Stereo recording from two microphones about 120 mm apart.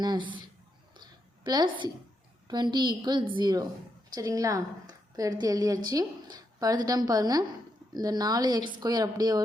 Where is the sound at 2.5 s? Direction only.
35° right (ahead or behind).